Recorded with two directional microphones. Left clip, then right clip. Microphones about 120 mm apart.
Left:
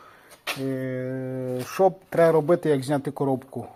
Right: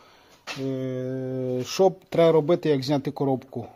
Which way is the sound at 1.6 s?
30° right (ahead or behind).